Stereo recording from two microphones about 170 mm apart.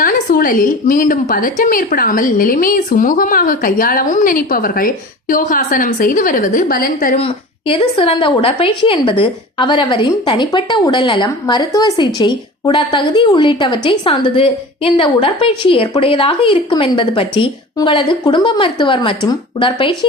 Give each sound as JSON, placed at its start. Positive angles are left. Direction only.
{"t": 0.0, "sound": "a woman's voice", "side_deg": 55}
{"t": 7.2, "sound": "a woman's voice", "side_deg": 30}